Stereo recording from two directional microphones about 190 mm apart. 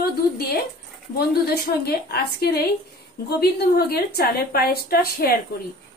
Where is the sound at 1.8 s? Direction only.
55° left (ahead or behind).